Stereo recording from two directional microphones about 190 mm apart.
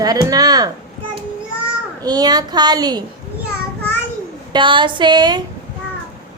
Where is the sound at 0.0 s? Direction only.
20° right (ahead or behind).